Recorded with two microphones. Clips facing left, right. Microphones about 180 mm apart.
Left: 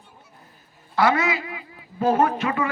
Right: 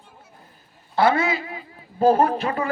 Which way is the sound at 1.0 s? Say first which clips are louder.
Right 1 dB; 30° right (ahead or behind).